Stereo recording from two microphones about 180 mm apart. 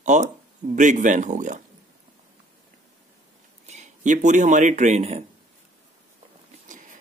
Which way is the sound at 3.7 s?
40° right (ahead or behind).